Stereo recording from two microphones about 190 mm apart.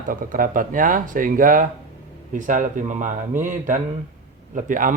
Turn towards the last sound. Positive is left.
turn(degrees=-45)  # may be behind; listen again after turning